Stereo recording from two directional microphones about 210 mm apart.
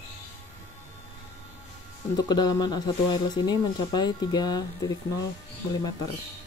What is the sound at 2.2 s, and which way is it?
Speech, 20° left (ahead or behind).